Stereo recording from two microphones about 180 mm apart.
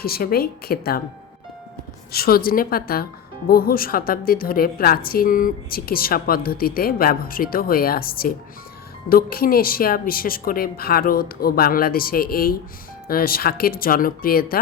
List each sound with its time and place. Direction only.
0.0 s speech: 55° left (ahead or behind)
2.1 s speech: 55° left (ahead or behind)